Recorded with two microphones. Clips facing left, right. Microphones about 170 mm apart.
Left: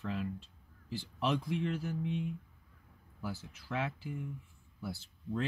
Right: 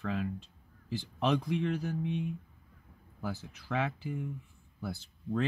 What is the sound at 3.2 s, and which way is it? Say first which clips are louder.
Speech: right 3 dB; 60° right (ahead or behind).